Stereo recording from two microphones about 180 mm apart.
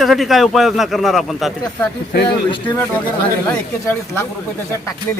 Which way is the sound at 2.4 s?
25° left (ahead or behind).